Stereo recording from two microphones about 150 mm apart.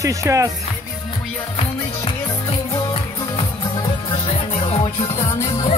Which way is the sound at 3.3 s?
35° left (ahead or behind).